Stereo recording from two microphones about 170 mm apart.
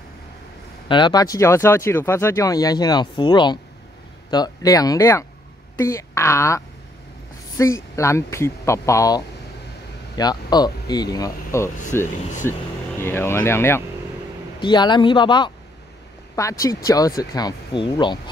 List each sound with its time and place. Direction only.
0.8 s a woman's voice: 25° left (ahead or behind)
14.6 s speech: 25° left (ahead or behind)